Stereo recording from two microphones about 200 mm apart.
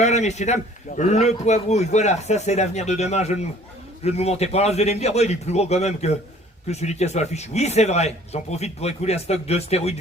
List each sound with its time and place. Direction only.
0.0 s a man's voice: 35° left (ahead or behind)